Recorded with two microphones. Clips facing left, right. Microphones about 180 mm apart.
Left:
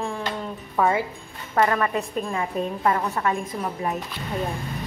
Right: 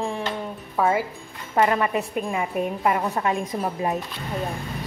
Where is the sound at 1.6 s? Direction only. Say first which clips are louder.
Right 1 dB; 20° right (ahead or behind).